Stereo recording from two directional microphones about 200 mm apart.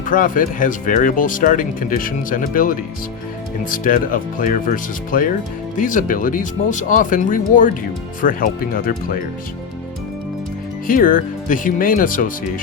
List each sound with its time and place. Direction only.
0.0 s speech: 40° left (ahead or behind)
10.8 s speech: 45° left (ahead or behind)